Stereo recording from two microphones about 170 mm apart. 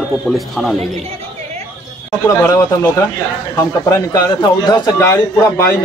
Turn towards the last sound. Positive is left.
turn(degrees=15)  # may be behind; listen again after turning